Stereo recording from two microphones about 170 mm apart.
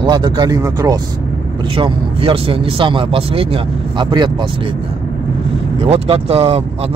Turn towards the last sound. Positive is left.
turn(degrees=-35)  # may be behind; listen again after turning